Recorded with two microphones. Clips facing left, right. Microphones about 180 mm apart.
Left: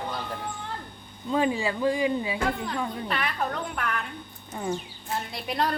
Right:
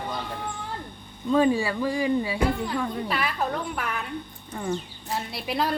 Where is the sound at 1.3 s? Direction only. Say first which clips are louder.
Right 4 dB; 20° left (ahead or behind).